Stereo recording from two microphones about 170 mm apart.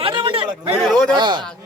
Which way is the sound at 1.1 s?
25° right (ahead or behind).